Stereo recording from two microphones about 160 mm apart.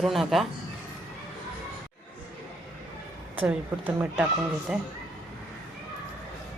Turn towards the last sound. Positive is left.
turn(degrees=-5)  # may be behind; listen again after turning